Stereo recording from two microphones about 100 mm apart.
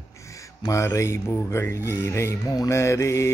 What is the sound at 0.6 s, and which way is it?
Speech, 30° left (ahead or behind).